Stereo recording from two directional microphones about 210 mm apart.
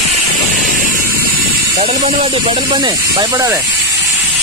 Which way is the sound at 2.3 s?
25° right (ahead or behind).